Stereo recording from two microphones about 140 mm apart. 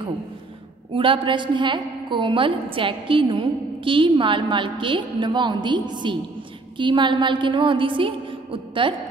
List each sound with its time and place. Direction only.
0.9 s a woman's voice: 40° right (ahead or behind)